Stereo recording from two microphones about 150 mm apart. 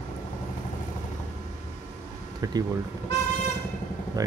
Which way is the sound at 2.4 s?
25° right (ahead or behind).